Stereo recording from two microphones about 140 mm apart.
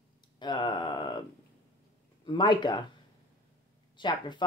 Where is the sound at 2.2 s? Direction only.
35° left (ahead or behind).